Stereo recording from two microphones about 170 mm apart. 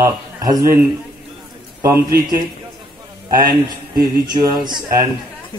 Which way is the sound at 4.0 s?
25° right (ahead or behind).